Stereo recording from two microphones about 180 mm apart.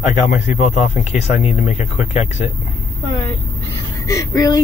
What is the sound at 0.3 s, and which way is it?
Speech, 40° left (ahead or behind).